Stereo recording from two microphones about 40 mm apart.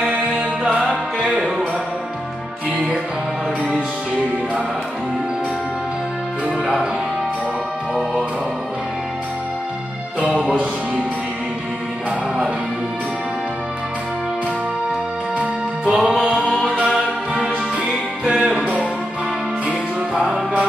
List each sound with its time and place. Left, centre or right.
0.2 s music: right
10.2 s music: right
15.8 s music: centre